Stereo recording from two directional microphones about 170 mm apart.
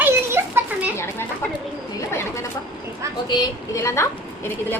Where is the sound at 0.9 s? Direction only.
15° left (ahead or behind).